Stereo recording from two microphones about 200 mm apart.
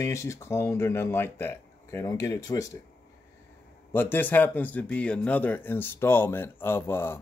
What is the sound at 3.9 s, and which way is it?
Speech, 10° left (ahead or behind).